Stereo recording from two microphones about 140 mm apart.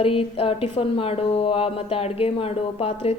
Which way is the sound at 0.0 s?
45° left (ahead or behind).